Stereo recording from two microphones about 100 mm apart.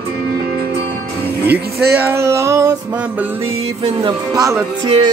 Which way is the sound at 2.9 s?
15° right (ahead or behind).